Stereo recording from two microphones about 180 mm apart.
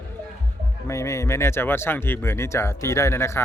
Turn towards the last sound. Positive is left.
turn(degrees=15)  # may be behind; listen again after turning